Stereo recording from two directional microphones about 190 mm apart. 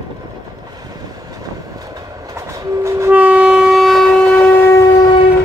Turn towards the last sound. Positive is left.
turn(degrees=15)  # may be behind; listen again after turning